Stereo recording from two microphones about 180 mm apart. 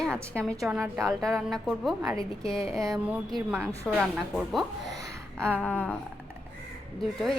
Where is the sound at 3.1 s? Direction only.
5° right (ahead or behind).